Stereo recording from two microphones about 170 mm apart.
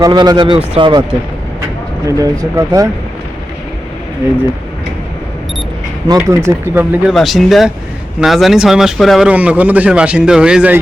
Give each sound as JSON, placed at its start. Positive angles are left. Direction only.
{"t": 0.0, "sound": "speech", "side_deg": -25}
{"t": 2.0, "sound": "speech", "side_deg": -20}
{"t": 6.1, "sound": "speech", "side_deg": -15}
{"t": 7.1, "sound": "speech", "side_deg": 0}